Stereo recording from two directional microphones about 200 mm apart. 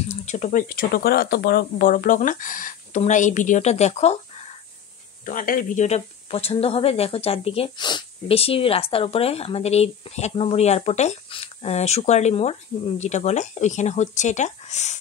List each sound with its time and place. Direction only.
0.1 s speech: 35° left (ahead or behind)